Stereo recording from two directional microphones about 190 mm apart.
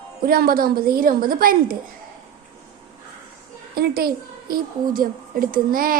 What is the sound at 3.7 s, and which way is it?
A woman's voice, 55° right (ahead or behind).